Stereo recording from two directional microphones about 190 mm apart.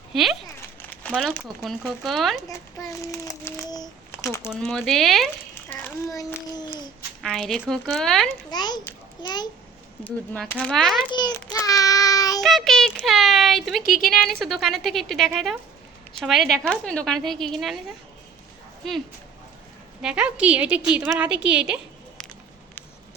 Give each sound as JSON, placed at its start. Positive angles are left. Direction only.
{"t": 0.1, "sound": "speech", "side_deg": 0}
{"t": 0.8, "sound": "crumpling", "side_deg": 10}
{"t": 1.3, "sound": "a woman's voice", "side_deg": 5}
{"t": 3.0, "sound": "a sound", "side_deg": 15}
{"t": 4.4, "sound": "a woman's voice", "side_deg": 0}
{"t": 5.7, "sound": "a child's voice", "side_deg": 15}
{"t": 7.2, "sound": "a woman's voice", "side_deg": 0}
{"t": 8.4, "sound": "a sound", "side_deg": 20}
{"t": 10.0, "sound": "a woman's voice", "side_deg": 5}
{"t": 11.4, "sound": "child singing", "side_deg": 20}
{"t": 12.4, "sound": "a sound", "side_deg": 0}
{"t": 13.9, "sound": "a woman's voice", "side_deg": 0}
{"t": 20.0, "sound": "a woman's voice", "side_deg": -5}